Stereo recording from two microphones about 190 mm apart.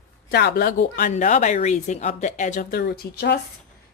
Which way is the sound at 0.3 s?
60° left (ahead or behind).